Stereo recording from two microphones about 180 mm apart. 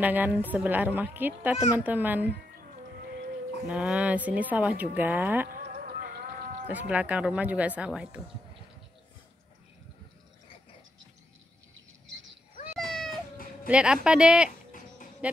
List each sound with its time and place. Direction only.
0.0 s a woman's voice: 10° right (ahead or behind)
3.7 s a woman's voice: 5° right (ahead or behind)
5.5 s a sound: 55° right (ahead or behind)
6.7 s a woman's voice: 10° right (ahead or behind)
12.7 s cat: centre (ahead or behind)
13.7 s speech: 5° right (ahead or behind)